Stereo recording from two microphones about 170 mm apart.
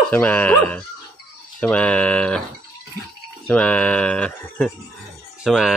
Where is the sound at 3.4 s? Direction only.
10° left (ahead or behind).